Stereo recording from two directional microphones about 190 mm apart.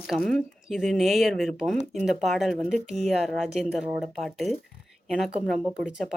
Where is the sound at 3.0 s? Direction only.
Centre (ahead or behind).